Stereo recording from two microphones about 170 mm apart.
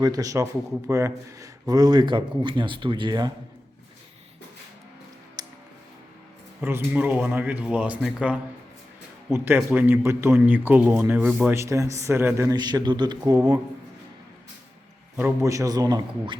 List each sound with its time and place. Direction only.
0.0 s speech: 20° right (ahead or behind)
5.4 s music: 25° right (ahead or behind)
6.6 s a man's voice: 15° right (ahead or behind)
15.1 s speech: 15° right (ahead or behind)